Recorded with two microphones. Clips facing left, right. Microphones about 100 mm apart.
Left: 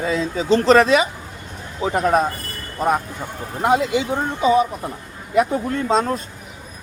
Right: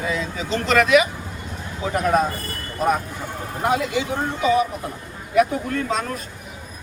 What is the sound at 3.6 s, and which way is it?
Speech, 20° left (ahead or behind).